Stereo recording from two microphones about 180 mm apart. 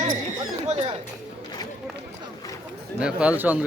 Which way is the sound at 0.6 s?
30° right (ahead or behind).